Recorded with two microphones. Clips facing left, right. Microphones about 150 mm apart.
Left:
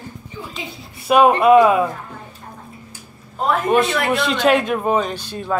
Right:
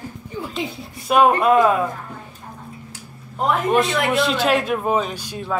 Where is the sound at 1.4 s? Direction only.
5° left (ahead or behind).